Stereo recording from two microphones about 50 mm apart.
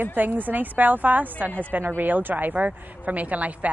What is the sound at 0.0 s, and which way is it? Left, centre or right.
A woman's voice, right.